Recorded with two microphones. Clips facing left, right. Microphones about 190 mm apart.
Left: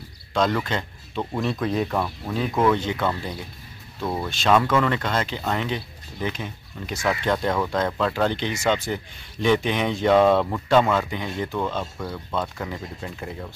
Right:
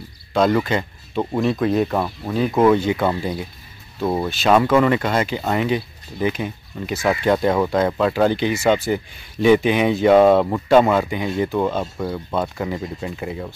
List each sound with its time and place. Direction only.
0.3 s speech: 10° right (ahead or behind)
2.0 s speech: 15° right (ahead or behind)
4.0 s speech: 25° right (ahead or behind)
4.3 s speech: 10° right (ahead or behind)
12.0 s speech: 25° right (ahead or behind)
12.4 s speech: 10° right (ahead or behind)